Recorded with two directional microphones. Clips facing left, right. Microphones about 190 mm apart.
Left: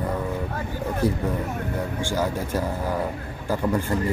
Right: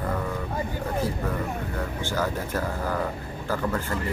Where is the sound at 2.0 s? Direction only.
10° left (ahead or behind).